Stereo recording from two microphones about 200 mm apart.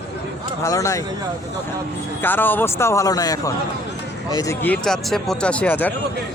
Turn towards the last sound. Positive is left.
turn(degrees=10)  # may be behind; listen again after turning